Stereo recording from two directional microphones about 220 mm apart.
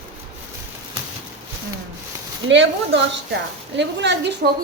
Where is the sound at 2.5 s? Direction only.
55° right (ahead or behind).